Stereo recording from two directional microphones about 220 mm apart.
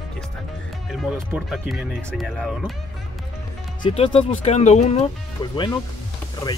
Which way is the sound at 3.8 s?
25° left (ahead or behind).